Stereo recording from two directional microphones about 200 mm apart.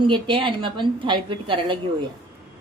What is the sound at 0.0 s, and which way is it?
Speech, 25° right (ahead or behind).